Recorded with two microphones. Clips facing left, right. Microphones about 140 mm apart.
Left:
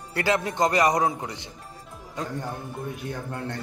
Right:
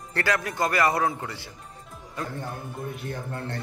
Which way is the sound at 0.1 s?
20° left (ahead or behind).